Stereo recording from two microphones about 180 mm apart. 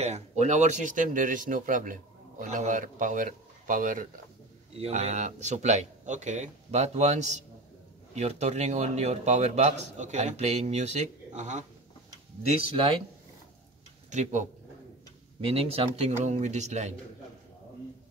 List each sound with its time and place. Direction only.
0.0 s speech: 40° right (ahead or behind)
4.7 s a man's voice: 35° right (ahead or behind)
14.1 s a man's voice: 40° right (ahead or behind)